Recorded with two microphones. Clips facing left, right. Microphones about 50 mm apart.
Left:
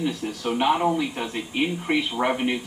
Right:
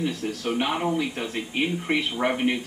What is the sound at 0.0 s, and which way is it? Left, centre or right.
A woman's voice, centre.